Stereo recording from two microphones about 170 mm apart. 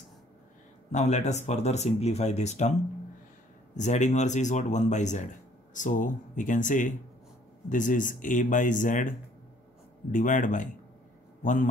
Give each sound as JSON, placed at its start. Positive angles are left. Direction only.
{"t": 0.9, "sound": "speech", "side_deg": 40}
{"t": 3.7, "sound": "speech", "side_deg": 45}
{"t": 10.1, "sound": "speech", "side_deg": 50}